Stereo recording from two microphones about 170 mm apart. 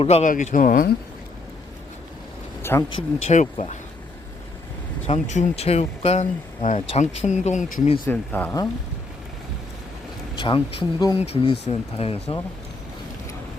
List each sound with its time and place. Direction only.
0.0 s speech: 35° left (ahead or behind)
0.3 s speech: 50° left (ahead or behind)
2.6 s speech: 15° left (ahead or behind)
2.9 s speech: 40° left (ahead or behind)
5.0 s speech: 40° left (ahead or behind)
8.0 s speech: 10° left (ahead or behind)
10.3 s speech: 30° left (ahead or behind)